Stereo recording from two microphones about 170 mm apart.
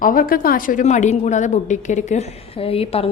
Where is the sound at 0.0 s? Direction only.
55° left (ahead or behind).